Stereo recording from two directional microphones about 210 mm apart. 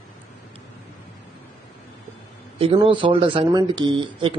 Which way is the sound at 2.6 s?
25° right (ahead or behind).